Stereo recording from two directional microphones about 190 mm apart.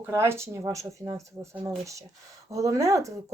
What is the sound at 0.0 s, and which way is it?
Speech, 15° right (ahead or behind).